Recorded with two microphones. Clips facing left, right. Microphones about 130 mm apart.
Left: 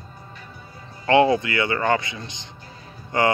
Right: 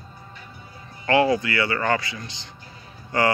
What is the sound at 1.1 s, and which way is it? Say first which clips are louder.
Speech: left 2 dB; 25° left (ahead or behind).